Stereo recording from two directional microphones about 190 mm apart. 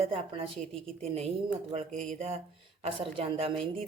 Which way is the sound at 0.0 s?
25° right (ahead or behind).